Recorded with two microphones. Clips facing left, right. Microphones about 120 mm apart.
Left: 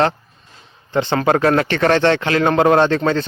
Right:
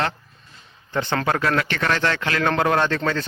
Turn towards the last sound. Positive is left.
turn(degrees=25)  # may be behind; listen again after turning